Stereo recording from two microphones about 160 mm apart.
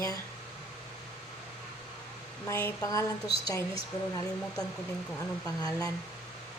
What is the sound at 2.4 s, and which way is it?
Speech, 15° left (ahead or behind).